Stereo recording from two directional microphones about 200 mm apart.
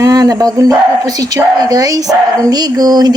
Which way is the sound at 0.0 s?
20° right (ahead or behind).